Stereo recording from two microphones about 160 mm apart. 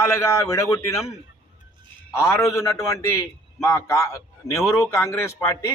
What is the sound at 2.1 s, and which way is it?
A man's voice, 15° left (ahead or behind).